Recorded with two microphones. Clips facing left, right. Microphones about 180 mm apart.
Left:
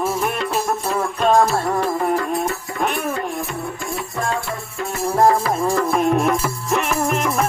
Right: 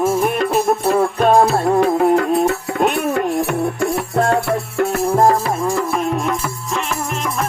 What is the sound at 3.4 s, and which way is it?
Music, 65° right (ahead or behind).